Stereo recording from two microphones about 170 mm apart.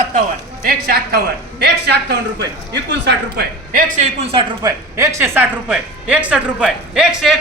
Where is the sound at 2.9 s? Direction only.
90° right.